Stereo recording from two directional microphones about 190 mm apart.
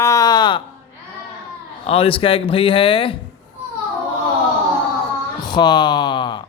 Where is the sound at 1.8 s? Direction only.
30° left (ahead or behind).